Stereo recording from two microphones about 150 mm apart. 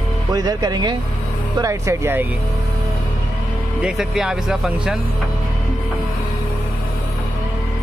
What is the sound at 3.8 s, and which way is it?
Speech, 5° right (ahead or behind).